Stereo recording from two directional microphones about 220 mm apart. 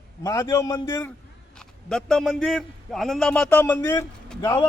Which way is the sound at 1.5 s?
5° left (ahead or behind).